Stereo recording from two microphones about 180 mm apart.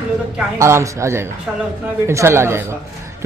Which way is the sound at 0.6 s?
15° right (ahead or behind).